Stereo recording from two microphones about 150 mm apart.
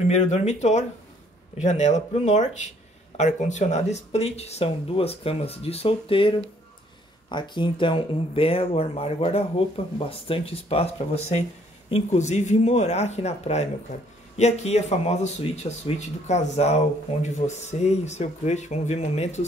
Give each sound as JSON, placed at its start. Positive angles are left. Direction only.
{"t": 0.1, "sound": "speech", "side_deg": 50}